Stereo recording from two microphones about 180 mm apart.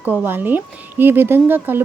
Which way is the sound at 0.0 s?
10° right (ahead or behind).